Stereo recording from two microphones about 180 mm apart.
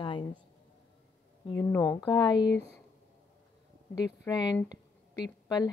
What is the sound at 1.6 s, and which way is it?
Speech, 20° left (ahead or behind).